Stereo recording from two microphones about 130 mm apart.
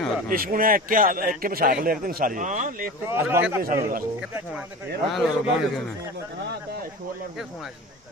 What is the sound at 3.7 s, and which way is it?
Speech, 90° right.